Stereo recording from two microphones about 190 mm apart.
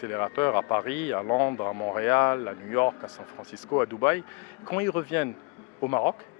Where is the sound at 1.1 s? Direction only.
25° left (ahead or behind).